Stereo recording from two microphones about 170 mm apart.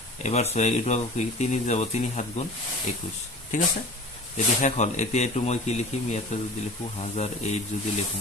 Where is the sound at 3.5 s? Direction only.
50° left (ahead or behind).